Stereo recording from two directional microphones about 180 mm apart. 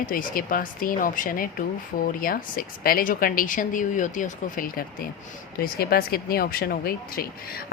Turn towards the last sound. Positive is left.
turn(degrees=55)  # may be behind; listen again after turning